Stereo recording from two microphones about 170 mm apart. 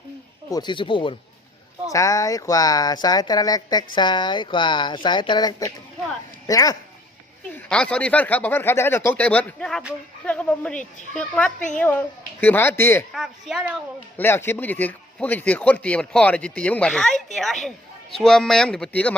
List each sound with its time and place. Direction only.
0.5 s speech: 25° left (ahead or behind)
7.5 s speech: 5° left (ahead or behind)
13.1 s speech: centre (ahead or behind)
14.2 s speech: 15° left (ahead or behind)